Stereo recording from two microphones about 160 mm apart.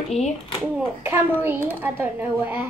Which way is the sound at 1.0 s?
15° right (ahead or behind).